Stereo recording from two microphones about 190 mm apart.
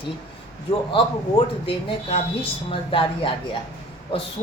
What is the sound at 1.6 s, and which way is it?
A woman's voice, 30° left (ahead or behind).